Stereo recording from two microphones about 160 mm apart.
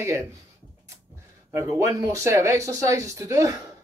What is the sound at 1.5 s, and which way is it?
Speech, 20° right (ahead or behind).